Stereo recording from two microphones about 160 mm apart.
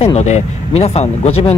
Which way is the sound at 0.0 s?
45° left (ahead or behind).